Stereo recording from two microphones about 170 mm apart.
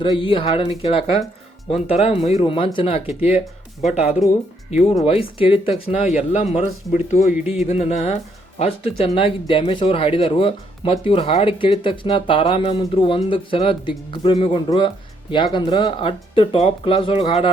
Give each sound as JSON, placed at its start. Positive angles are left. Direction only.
{"t": 0.2, "sound": "speech", "side_deg": 30}
{"t": 4.2, "sound": "speech", "side_deg": 0}
{"t": 4.7, "sound": "speech", "side_deg": 35}